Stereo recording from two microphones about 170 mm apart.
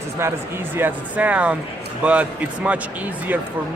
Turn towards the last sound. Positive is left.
turn(degrees=-10)  # may be behind; listen again after turning